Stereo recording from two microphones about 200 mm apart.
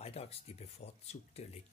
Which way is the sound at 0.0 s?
30° left (ahead or behind).